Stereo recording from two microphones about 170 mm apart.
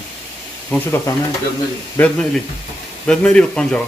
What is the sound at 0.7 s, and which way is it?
Speech, 15° left (ahead or behind).